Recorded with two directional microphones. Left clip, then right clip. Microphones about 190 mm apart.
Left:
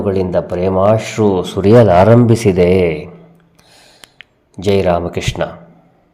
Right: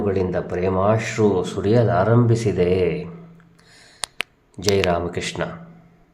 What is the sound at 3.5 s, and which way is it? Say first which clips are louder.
Gasp: left 6 dB; 20° left (ahead or behind).